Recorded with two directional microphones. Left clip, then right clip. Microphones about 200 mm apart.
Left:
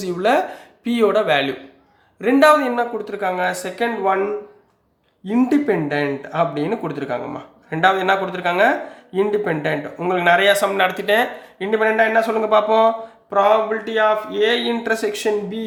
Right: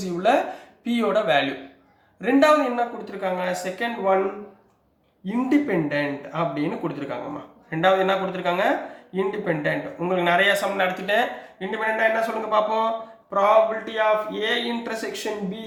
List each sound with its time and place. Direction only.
0.0 s a man's voice: 40° left (ahead or behind)
5.3 s a man's voice: 50° left (ahead or behind)